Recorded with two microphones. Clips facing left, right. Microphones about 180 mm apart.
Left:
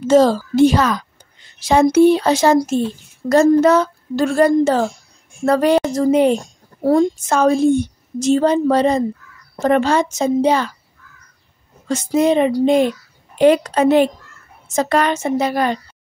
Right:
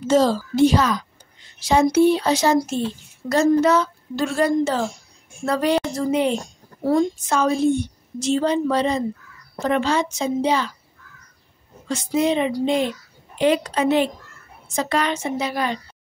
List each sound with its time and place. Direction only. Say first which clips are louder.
0.1 s a child's voice: left 5 dB; 55° left (ahead or behind)
11.9 s a woman's voice: left 5 dB; 45° left (ahead or behind)